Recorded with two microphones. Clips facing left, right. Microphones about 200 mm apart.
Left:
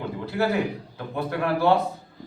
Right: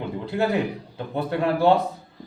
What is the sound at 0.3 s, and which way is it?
Speech, 20° right (ahead or behind).